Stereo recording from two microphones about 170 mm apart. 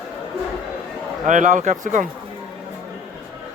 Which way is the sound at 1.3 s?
45° right (ahead or behind).